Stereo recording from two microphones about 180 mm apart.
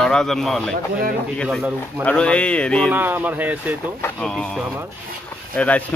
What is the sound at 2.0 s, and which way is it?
Speech, 5° left (ahead or behind).